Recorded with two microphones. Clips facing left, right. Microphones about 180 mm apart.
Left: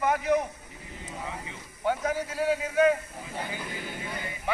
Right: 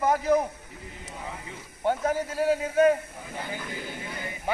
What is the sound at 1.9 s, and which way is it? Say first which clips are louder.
A man's voice: right 2 dB; 40° right (ahead or behind).